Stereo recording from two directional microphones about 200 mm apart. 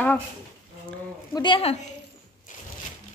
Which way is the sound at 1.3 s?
25° left (ahead or behind).